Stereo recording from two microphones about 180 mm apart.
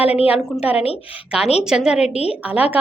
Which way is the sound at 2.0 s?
35° left (ahead or behind).